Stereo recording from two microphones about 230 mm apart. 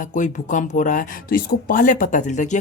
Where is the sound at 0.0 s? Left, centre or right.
Left.